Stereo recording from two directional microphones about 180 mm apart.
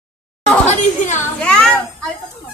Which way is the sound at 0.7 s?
45° left (ahead or behind).